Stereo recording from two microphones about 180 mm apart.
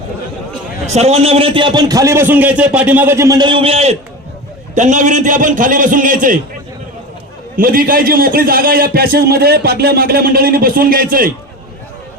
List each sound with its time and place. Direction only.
0.9 s a man's voice: 35° right (ahead or behind)
7.5 s a man's voice: 50° right (ahead or behind)